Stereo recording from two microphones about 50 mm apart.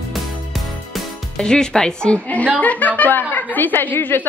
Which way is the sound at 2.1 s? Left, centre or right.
Left.